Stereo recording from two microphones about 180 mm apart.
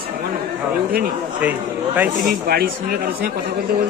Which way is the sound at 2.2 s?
55° right (ahead or behind).